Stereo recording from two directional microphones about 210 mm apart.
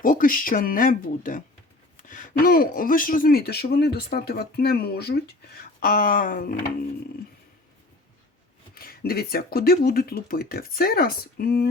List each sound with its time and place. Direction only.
0.0 s speech: 40° left (ahead or behind)
8.7 s speech: 45° left (ahead or behind)